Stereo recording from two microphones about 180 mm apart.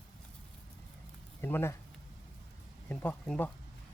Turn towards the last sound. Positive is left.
turn(degrees=5)  # may be behind; listen again after turning